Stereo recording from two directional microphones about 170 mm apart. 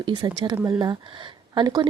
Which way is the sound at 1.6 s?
25° right (ahead or behind).